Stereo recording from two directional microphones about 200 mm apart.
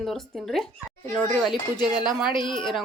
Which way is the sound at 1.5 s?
20° left (ahead or behind).